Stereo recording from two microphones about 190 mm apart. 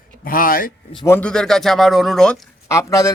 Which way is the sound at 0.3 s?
50° left (ahead or behind).